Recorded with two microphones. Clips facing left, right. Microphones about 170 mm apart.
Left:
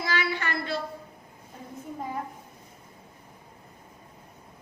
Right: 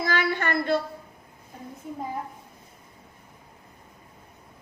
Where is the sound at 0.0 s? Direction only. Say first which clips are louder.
Right 4 dB; 50° right (ahead or behind).